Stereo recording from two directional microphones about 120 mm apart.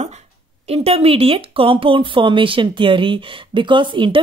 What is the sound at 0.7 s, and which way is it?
Speech, 55° right (ahead or behind).